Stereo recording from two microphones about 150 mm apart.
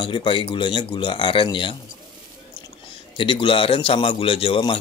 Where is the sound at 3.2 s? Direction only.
35° left (ahead or behind).